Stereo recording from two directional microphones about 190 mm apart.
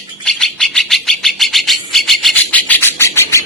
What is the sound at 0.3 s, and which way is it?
Bird, centre (ahead or behind).